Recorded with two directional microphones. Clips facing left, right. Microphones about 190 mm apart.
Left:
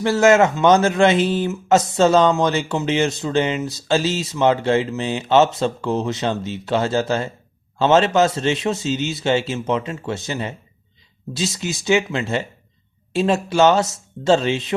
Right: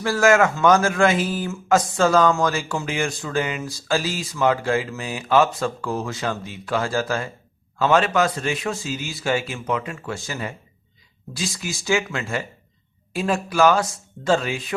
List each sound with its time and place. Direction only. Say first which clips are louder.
0.0 s speech: left 3 dB; 20° left (ahead or behind)